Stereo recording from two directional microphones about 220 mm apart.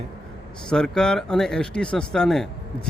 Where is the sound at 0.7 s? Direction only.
5° left (ahead or behind).